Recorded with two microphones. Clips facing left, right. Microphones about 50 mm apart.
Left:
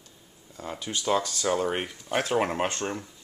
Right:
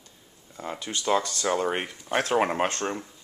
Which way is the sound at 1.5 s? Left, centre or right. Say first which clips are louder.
Right 1 dB; centre.